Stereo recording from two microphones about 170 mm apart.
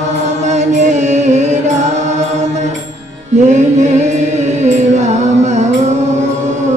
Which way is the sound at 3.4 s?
45° right (ahead or behind).